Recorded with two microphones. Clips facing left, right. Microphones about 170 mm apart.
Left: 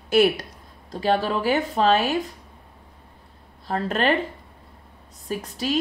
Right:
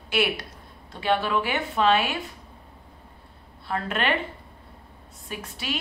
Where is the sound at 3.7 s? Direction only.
35° left (ahead or behind).